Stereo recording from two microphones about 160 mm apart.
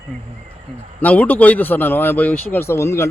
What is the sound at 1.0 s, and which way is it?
A man's voice, 10° left (ahead or behind).